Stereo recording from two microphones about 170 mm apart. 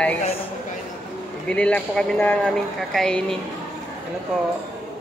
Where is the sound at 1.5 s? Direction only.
5° left (ahead or behind).